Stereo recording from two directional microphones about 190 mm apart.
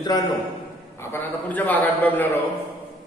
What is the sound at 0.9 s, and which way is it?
A man's voice, 10° left (ahead or behind).